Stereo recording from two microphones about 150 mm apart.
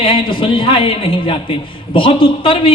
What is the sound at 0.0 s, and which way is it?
A man's voice, 35° left (ahead or behind).